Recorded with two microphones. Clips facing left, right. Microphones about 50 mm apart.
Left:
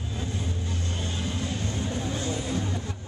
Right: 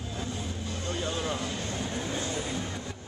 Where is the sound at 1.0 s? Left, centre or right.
Right.